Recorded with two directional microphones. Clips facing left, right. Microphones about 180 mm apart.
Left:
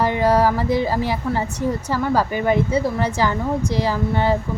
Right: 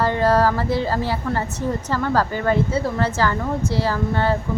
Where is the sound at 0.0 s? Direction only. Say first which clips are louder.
Left 1 dB; 15° left (ahead or behind).